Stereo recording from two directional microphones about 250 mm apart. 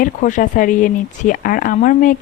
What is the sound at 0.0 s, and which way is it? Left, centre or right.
Speech, left.